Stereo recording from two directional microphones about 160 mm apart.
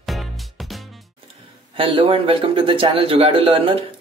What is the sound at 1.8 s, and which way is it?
A man's voice, 35° right (ahead or behind).